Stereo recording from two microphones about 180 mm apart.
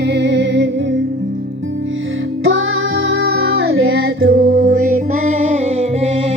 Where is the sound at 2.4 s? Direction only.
90° right.